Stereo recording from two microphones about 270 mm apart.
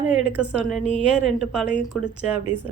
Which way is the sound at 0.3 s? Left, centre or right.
Centre.